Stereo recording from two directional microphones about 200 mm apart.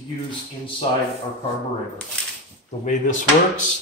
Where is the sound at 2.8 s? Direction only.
40° left (ahead or behind).